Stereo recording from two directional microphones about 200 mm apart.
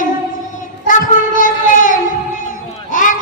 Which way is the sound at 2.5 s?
40° left (ahead or behind).